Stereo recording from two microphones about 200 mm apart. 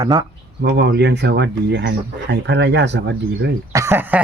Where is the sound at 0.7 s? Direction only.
60° right (ahead or behind).